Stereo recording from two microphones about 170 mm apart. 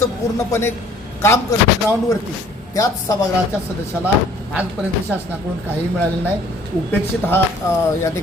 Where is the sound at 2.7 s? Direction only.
20° left (ahead or behind).